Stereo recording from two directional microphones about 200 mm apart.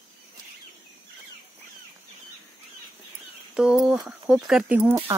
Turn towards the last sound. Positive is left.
turn(degrees=-10)  # may be behind; listen again after turning